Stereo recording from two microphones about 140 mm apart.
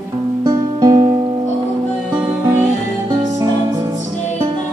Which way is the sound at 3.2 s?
30° right (ahead or behind).